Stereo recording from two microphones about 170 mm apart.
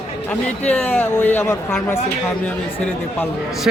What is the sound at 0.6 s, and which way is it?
Speech, 10° left (ahead or behind).